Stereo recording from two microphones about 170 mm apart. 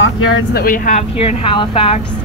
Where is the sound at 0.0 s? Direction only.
90° left.